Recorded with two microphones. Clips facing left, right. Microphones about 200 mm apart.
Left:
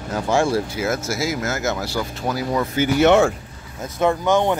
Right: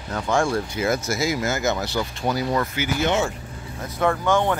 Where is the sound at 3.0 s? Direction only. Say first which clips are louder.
Left 8 dB; 60° left (ahead or behind).